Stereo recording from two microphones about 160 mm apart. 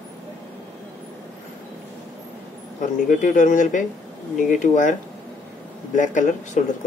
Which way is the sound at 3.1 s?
50° left (ahead or behind).